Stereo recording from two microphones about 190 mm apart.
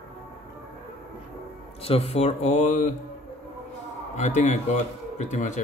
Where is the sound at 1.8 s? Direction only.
30° left (ahead or behind).